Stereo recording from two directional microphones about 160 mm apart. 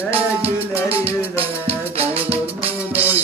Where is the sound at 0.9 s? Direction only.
40° right (ahead or behind).